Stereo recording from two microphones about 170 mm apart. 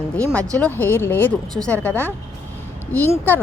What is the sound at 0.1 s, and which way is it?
A woman's voice, 10° left (ahead or behind).